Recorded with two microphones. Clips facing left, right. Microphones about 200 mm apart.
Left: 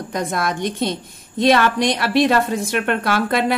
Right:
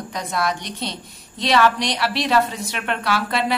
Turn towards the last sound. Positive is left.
turn(degrees=50)  # may be behind; listen again after turning